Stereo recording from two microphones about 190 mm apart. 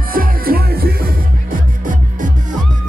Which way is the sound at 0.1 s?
50° right (ahead or behind).